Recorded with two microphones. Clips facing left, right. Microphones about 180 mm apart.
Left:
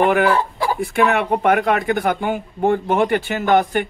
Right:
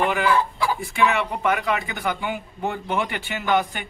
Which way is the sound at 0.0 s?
50° left (ahead or behind).